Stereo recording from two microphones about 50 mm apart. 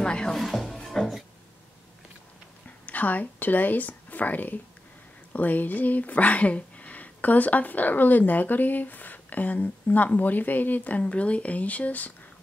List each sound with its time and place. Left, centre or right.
0.0 s music: centre
0.3 s music: centre
2.9 s a woman's voice: left